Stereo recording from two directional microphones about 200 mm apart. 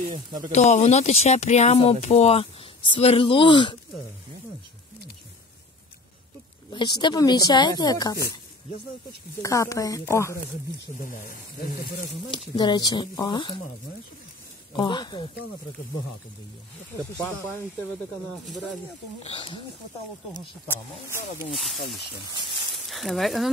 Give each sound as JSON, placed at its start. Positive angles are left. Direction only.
{"t": 0.5, "sound": "speech", "side_deg": 35}
{"t": 6.7, "sound": "speech", "side_deg": 25}
{"t": 9.4, "sound": "speech", "side_deg": 15}
{"t": 11.1, "sound": "speech", "side_deg": 45}
{"t": 12.3, "sound": "speech", "side_deg": 20}
{"t": 14.7, "sound": "speech", "side_deg": 20}
{"t": 19.2, "sound": "speech", "side_deg": 25}
{"t": 20.3, "sound": "speech", "side_deg": 10}
{"t": 21.5, "sound": "speech", "side_deg": 0}